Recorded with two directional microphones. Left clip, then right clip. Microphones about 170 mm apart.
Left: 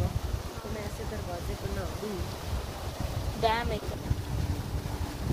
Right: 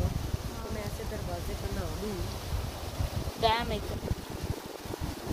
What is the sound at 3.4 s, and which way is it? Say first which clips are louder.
Boat: even; 60° right (ahead or behind).